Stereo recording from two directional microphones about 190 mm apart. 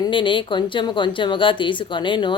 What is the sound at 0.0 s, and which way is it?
Speech, 25° left (ahead or behind).